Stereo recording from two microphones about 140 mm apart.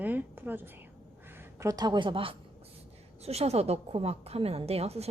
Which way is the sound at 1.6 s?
25° right (ahead or behind).